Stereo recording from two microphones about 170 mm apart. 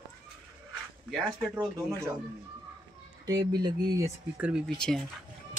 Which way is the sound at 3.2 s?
20° right (ahead or behind).